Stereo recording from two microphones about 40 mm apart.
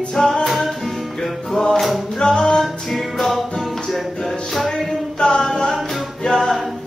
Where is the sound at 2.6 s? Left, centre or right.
Centre.